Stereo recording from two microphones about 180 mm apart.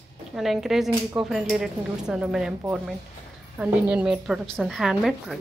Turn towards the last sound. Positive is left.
turn(degrees=0)  # may be behind; listen again after turning